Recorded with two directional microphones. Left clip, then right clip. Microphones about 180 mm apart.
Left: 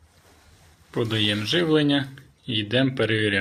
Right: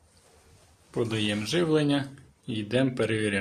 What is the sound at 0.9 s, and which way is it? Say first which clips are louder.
Speech: left 5 dB; 5° right (ahead or behind).